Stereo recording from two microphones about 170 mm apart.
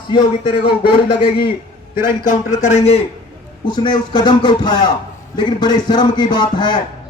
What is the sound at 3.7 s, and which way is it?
Speech, 25° left (ahead or behind).